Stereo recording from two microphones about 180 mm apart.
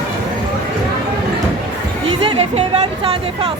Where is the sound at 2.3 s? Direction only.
35° right (ahead or behind).